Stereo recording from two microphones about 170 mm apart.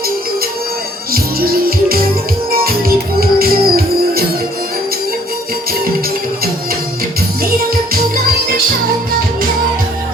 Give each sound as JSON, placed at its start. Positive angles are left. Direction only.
{"t": 1.1, "sound": "music", "side_deg": -60}